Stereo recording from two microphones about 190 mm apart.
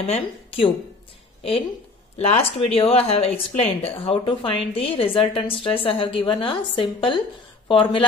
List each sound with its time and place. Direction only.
0.0 s a woman's voice: 30° left (ahead or behind)
2.1 s a woman's voice: 35° left (ahead or behind)